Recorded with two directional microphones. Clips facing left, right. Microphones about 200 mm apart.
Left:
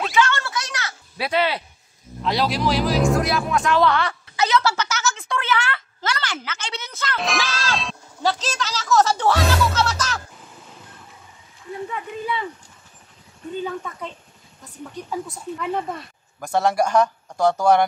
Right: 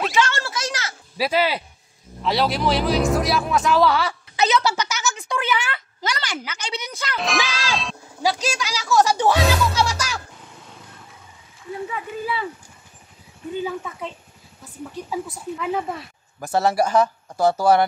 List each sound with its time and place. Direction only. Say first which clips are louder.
0.1 s a sound: left 1 dB; 25° right (ahead or behind)
1.1 s speech: right 1 dB; 5° right (ahead or behind)
4.4 s a child's voice: even; 15° right (ahead or behind)
7.2 s speech: right 1 dB; centre (ahead or behind)
8.2 s speech: right 1 dB; 10° right (ahead or behind)
11.9 s speech: left 1 dB; 5° right (ahead or behind)
13.6 s speech: right 1 dB; 10° right (ahead or behind)